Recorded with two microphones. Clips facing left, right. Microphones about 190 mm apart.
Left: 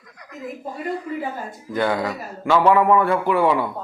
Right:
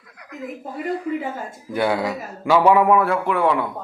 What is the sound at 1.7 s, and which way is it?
A man's voice, 10° right (ahead or behind).